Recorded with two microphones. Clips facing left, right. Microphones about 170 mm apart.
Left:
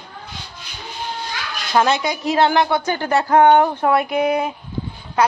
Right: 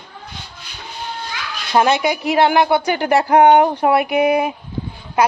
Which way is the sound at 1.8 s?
10° right (ahead or behind).